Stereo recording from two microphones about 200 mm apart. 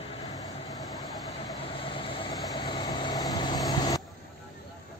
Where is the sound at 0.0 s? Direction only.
25° left (ahead or behind).